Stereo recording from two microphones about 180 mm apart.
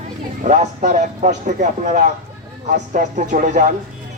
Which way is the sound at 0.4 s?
40° right (ahead or behind).